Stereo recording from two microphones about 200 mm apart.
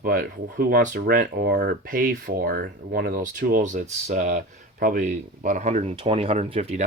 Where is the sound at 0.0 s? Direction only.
45° right (ahead or behind).